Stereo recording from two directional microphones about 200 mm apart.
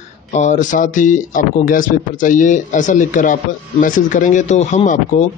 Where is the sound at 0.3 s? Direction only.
35° left (ahead or behind).